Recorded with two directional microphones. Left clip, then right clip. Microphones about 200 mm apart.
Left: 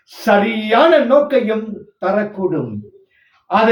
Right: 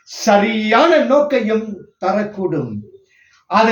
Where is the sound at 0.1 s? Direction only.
Centre (ahead or behind).